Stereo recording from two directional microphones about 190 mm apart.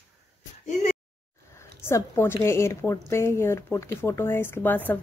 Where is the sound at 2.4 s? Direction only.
15° left (ahead or behind).